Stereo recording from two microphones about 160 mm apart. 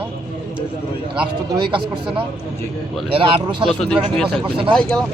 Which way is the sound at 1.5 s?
30° right (ahead or behind).